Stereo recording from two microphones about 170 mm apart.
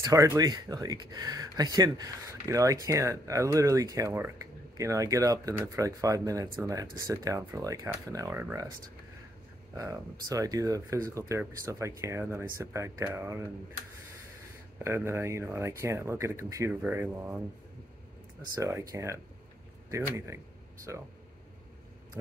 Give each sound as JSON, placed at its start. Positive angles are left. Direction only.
{"t": 0.0, "sound": "speech", "side_deg": -20}
{"t": 9.8, "sound": "speech", "side_deg": -20}
{"t": 14.8, "sound": "speech", "side_deg": -15}
{"t": 18.6, "sound": "speech", "side_deg": -15}
{"t": 22.2, "sound": "a sound", "side_deg": -15}